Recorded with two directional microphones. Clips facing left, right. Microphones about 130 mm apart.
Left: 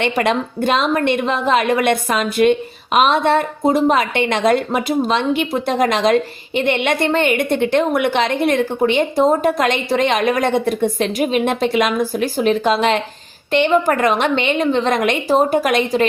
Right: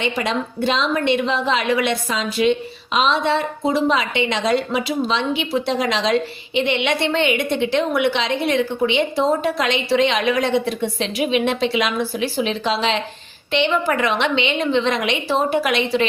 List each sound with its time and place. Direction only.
0.0 s a woman's voice: 60° left (ahead or behind)